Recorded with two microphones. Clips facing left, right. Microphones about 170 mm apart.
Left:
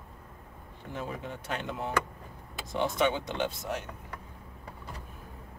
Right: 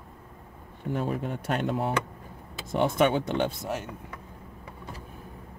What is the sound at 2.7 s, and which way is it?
Speech, 50° right (ahead or behind).